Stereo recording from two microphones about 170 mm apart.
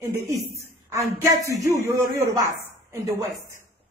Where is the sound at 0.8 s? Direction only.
15° right (ahead or behind).